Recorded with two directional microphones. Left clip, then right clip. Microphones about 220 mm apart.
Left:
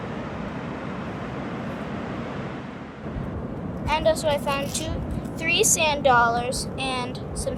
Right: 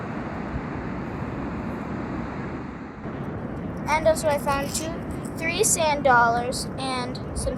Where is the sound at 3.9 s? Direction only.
15° left (ahead or behind).